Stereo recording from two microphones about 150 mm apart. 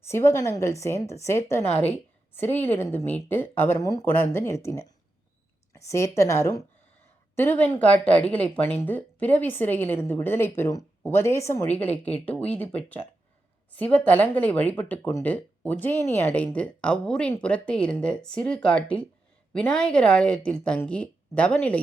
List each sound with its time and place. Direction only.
0.0 s a woman's voice: 15° left (ahead or behind)
4.0 s a woman's voice: 15° left (ahead or behind)
13.7 s speech: 10° left (ahead or behind)